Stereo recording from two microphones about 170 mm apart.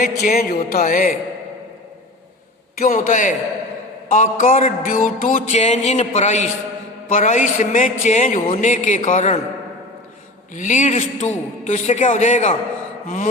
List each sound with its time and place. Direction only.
0.0 s music: 60° left (ahead or behind)
2.7 s music: 55° left (ahead or behind)
10.5 s music: 45° left (ahead or behind)